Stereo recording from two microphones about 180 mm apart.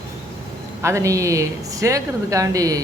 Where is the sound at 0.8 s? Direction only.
15° right (ahead or behind).